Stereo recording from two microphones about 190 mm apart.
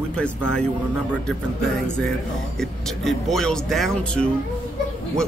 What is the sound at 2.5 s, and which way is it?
Speech, centre (ahead or behind).